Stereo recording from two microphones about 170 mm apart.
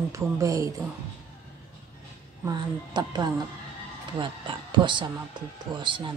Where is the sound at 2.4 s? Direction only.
25° right (ahead or behind).